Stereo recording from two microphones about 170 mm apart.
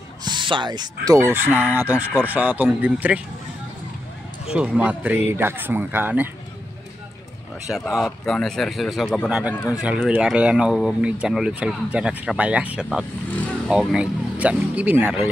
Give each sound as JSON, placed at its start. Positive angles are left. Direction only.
{"t": 0.2, "sound": "a sound", "side_deg": -25}
{"t": 1.0, "sound": "speech", "side_deg": -15}
{"t": 4.5, "sound": "speech", "side_deg": -5}
{"t": 7.6, "sound": "speech", "side_deg": 0}
{"t": 9.8, "sound": "speech", "side_deg": -5}